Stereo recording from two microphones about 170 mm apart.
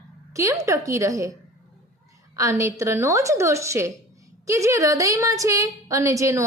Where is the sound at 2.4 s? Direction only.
15° right (ahead or behind).